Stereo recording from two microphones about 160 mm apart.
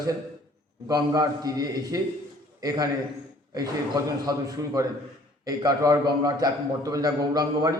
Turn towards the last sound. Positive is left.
turn(degrees=-25)  # may be behind; listen again after turning